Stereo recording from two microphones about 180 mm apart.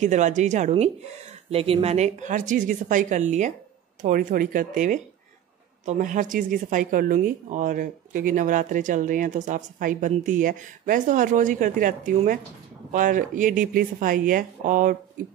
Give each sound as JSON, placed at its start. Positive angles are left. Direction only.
{"t": 0.0, "sound": "speech", "side_deg": -40}